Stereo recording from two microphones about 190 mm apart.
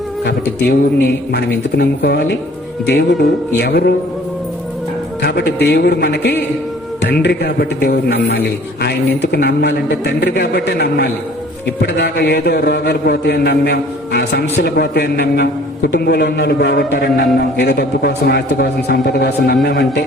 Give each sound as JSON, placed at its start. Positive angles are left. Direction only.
{"t": 0.3, "sound": "a man's voice", "side_deg": 60}
{"t": 5.2, "sound": "a man's voice", "side_deg": 60}